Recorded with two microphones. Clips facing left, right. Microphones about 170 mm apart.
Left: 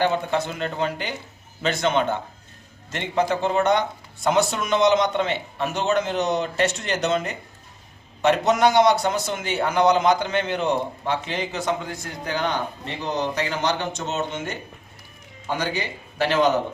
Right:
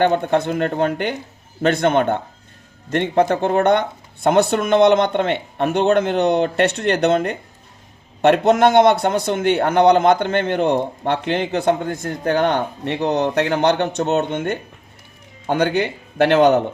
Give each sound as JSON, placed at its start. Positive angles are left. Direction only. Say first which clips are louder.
{"t": 0.0, "sound": "a man's voice", "louder": "right 6 dB", "side_deg": -55}